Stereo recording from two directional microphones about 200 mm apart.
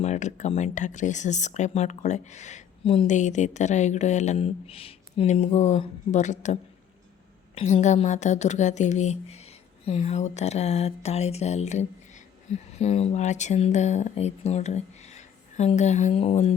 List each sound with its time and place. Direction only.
0.0 s speech: 35° left (ahead or behind)